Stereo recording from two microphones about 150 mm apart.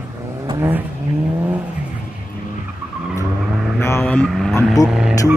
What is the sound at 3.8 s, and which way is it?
Vehicle, 15° left (ahead or behind).